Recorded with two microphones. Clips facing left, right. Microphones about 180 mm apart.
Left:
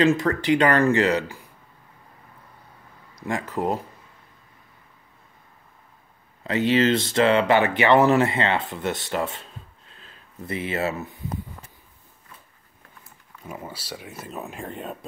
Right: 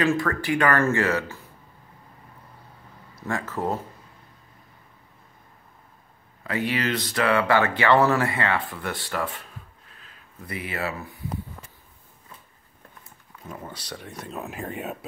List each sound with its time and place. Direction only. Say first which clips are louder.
0.0 s speech: left 4 dB; 20° left (ahead or behind)
3.2 s speech: left 2 dB; 15° left (ahead or behind)
6.4 s speech: left 6 dB; 25° left (ahead or behind)
13.5 s speech: left 2 dB; 10° left (ahead or behind)